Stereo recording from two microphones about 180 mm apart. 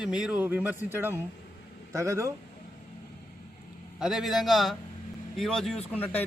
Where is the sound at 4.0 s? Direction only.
Centre (ahead or behind).